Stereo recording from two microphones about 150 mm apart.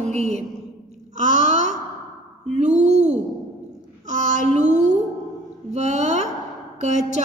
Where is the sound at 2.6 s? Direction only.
50° right (ahead or behind).